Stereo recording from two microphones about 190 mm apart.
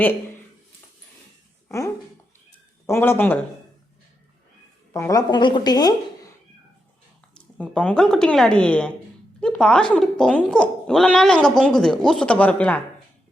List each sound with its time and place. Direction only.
1.6 s a sound: 15° left (ahead or behind)
2.8 s speech: 15° left (ahead or behind)
4.9 s a woman's voice: 15° left (ahead or behind)
7.3 s speech: 5° left (ahead or behind)